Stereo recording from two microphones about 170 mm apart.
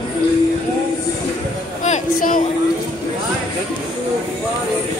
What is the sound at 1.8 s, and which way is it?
Speech, 55° left (ahead or behind).